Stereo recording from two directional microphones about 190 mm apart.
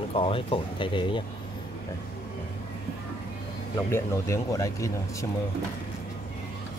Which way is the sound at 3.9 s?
15° left (ahead or behind).